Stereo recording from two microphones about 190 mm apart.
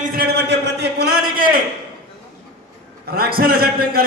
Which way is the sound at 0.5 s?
60° right (ahead or behind).